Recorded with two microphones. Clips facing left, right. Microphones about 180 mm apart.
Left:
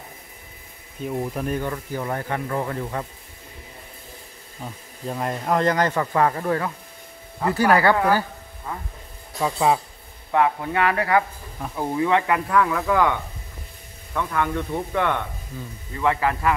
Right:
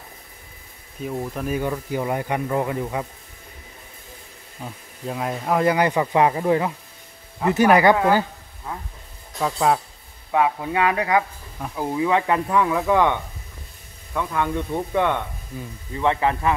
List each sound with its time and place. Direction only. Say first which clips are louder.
1.0 s speech: left 1 dB; 5° left (ahead or behind)
1.5 s speech: right 2 dB; 10° right (ahead or behind)
5.0 s speech: even; centre (ahead or behind); by 8.3 s 20° right (ahead or behind)
9.4 s speech: even; 5° left (ahead or behind)
10.3 s speech: even; 15° right (ahead or behind)
11.6 s speech: even; centre (ahead or behind); by 16.5 s 20° right (ahead or behind)